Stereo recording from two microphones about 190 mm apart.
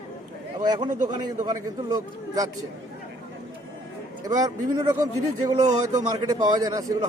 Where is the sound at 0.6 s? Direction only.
20° right (ahead or behind).